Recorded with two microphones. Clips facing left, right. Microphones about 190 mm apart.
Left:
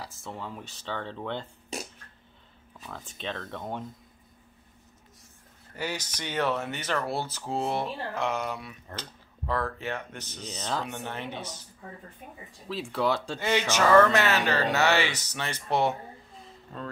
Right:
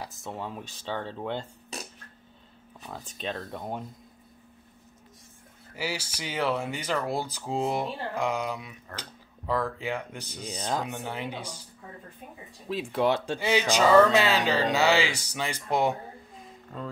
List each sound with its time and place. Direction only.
0.0 s speech: 20° right (ahead or behind)
2.9 s speech: 15° right (ahead or behind)
5.8 s speech: 10° right (ahead or behind)
12.8 s speech: 20° right (ahead or behind)